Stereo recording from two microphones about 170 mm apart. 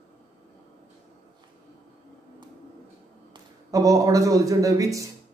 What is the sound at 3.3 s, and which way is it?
Speech, 20° right (ahead or behind).